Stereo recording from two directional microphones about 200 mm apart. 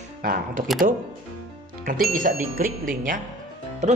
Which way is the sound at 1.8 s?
45° right (ahead or behind).